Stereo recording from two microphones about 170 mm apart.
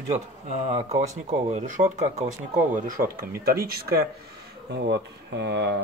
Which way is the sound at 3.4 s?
65° right (ahead or behind).